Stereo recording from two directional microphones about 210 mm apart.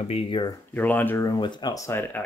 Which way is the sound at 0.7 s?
10° left (ahead or behind).